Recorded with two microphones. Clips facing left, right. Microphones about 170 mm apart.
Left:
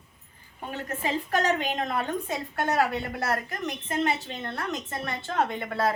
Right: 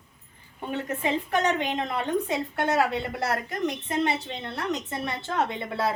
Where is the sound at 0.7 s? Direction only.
20° right (ahead or behind).